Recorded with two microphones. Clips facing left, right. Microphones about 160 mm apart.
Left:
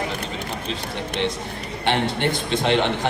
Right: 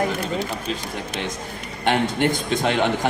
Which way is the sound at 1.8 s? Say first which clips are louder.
Right 2 dB; 45° right (ahead or behind).